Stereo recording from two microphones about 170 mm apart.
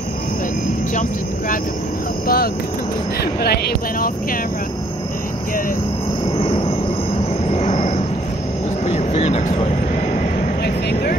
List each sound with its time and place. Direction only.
2.2 s speech: 60° left (ahead or behind)
6.3 s cricket: 35° left (ahead or behind)
7.4 s a sound: 40° left (ahead or behind)
8.8 s vehicle: 40° left (ahead or behind)
10.6 s vehicle: 75° left (ahead or behind)